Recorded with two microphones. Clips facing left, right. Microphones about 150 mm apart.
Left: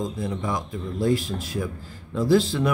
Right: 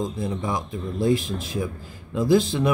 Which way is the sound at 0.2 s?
25° right (ahead or behind).